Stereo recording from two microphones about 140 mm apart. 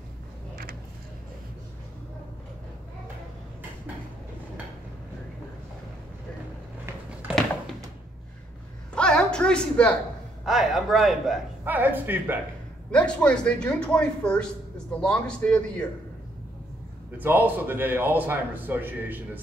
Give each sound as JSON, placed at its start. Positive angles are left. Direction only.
{"t": 7.3, "sound": "a sound", "side_deg": -10}
{"t": 8.9, "sound": "a sound", "side_deg": 5}
{"t": 10.4, "sound": "speech", "side_deg": 0}
{"t": 11.6, "sound": "a man's voice", "side_deg": -15}
{"t": 12.9, "sound": "speech", "side_deg": 5}
{"t": 17.2, "sound": "a man's voice", "side_deg": -15}